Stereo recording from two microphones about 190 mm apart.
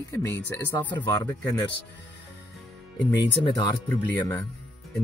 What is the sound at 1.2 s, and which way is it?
Speech, 10° left (ahead or behind).